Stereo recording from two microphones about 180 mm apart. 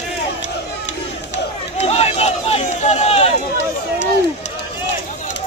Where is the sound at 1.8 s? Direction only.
35° left (ahead or behind).